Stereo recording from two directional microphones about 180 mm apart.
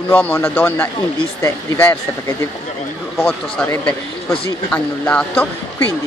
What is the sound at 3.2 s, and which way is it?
Speech, 5° left (ahead or behind).